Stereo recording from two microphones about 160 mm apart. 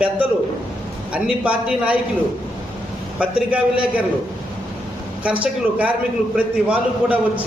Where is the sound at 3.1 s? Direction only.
5° right (ahead or behind).